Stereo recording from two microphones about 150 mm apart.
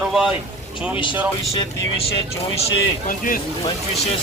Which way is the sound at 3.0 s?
65° left (ahead or behind).